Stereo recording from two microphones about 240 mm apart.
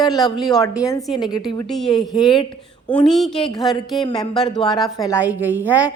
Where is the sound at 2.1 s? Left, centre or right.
Centre.